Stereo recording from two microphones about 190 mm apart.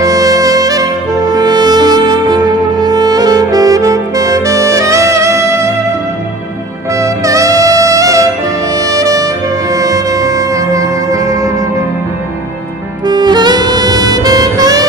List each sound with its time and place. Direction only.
0.0 s music: 20° right (ahead or behind)
6.9 s saxophone: 15° right (ahead or behind)
8.7 s music: 15° right (ahead or behind)
13.1 s saxophone: 20° right (ahead or behind)